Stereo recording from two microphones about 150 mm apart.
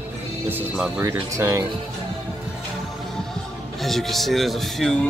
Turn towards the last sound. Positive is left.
turn(degrees=0)  # may be behind; listen again after turning